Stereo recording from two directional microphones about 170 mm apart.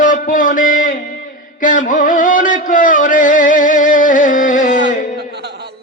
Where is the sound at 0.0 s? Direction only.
50° left (ahead or behind).